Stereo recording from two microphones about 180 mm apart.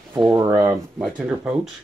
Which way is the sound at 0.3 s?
15° right (ahead or behind).